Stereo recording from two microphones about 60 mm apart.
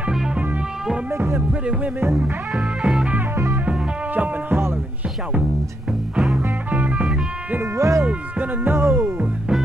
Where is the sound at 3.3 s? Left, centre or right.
Right.